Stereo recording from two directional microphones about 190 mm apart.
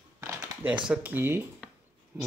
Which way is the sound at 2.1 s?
10° right (ahead or behind).